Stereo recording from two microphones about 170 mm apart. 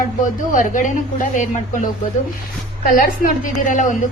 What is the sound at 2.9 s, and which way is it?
A woman's voice, 60° left (ahead or behind).